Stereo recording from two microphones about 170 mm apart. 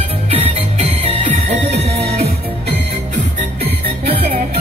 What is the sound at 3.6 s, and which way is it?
Music, 35° right (ahead or behind).